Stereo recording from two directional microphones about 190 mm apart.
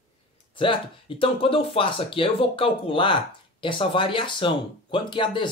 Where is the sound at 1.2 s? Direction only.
30° left (ahead or behind).